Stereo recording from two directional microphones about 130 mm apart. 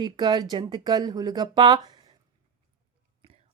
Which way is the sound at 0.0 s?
35° right (ahead or behind).